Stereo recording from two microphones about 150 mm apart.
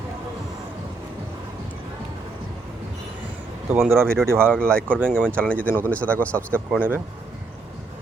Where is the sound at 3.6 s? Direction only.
10° right (ahead or behind).